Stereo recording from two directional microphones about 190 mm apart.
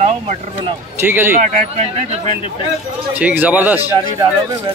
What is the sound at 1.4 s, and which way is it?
Speech, 35° right (ahead or behind).